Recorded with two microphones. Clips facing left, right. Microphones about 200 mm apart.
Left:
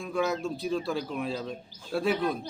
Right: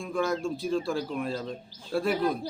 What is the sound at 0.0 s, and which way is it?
A man's voice, 5° left (ahead or behind).